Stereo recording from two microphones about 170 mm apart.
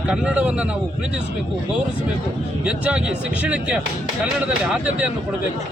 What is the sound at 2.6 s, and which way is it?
Speech, 5° right (ahead or behind).